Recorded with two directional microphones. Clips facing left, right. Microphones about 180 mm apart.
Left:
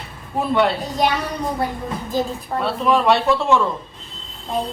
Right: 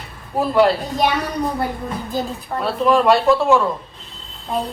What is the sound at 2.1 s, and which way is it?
Speech, centre (ahead or behind).